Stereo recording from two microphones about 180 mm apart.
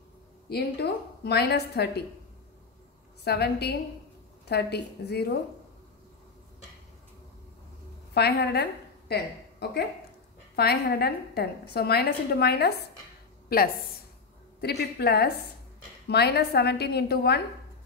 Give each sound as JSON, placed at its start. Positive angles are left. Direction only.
{"t": 0.5, "sound": "a woman's voice", "side_deg": 65}
{"t": 3.3, "sound": "a woman's voice", "side_deg": 65}
{"t": 8.1, "sound": "a woman's voice", "side_deg": 65}